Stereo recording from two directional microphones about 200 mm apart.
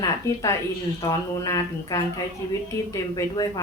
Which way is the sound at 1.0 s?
15° left (ahead or behind).